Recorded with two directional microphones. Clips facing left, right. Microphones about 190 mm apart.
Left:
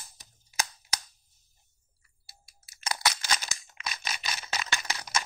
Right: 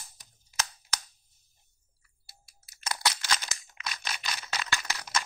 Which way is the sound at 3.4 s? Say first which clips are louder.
Left 1 dB; 10° left (ahead or behind).